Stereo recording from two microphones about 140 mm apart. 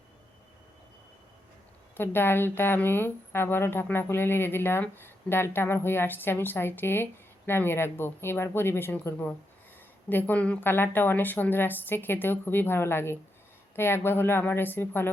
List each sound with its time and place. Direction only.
2.0 s a woman's voice: 15° left (ahead or behind)